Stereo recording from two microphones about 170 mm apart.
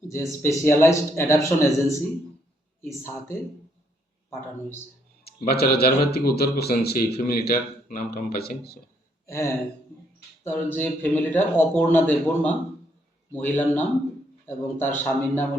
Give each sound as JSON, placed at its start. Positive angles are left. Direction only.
{"t": 0.1, "sound": "a man's voice", "side_deg": 15}
{"t": 5.2, "sound": "speech", "side_deg": 65}
{"t": 9.2, "sound": "a man's voice", "side_deg": 20}